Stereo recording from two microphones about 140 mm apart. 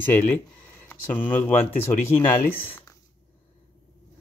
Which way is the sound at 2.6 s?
15° left (ahead or behind).